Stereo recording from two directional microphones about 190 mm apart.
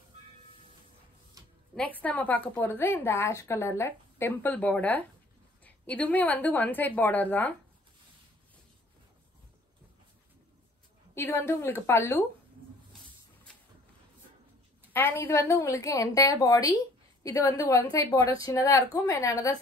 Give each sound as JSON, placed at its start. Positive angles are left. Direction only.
{"t": 2.0, "sound": "a woman's voice", "side_deg": 10}
{"t": 11.1, "sound": "a woman's voice", "side_deg": 15}
{"t": 14.9, "sound": "a woman's voice", "side_deg": 10}